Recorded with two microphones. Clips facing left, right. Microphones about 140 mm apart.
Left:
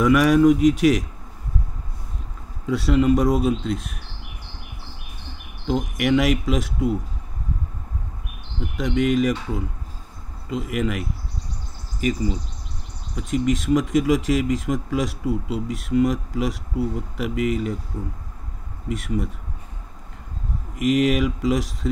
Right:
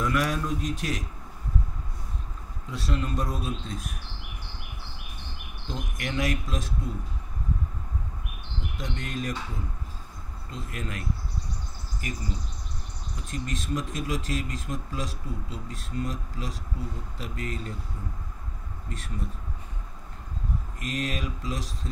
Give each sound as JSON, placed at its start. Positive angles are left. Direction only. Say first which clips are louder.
{"t": 0.0, "sound": "speech", "louder": "left 12 dB", "side_deg": 90}
{"t": 2.7, "sound": "speech", "louder": "left 13 dB", "side_deg": 90}
{"t": 5.9, "sound": "speech", "louder": "left 9 dB", "side_deg": 80}
{"t": 8.7, "sound": "speech", "louder": "left 15 dB", "side_deg": 90}
{"t": 18.9, "sound": "speech", "louder": "left 12 dB", "side_deg": 85}
{"t": 20.7, "sound": "speech", "louder": "left 14 dB", "side_deg": 90}